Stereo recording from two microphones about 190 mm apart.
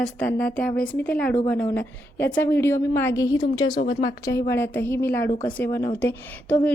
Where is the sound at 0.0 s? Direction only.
5° left (ahead or behind).